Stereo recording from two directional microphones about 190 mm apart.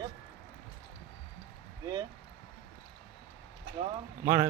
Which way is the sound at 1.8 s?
20° right (ahead or behind).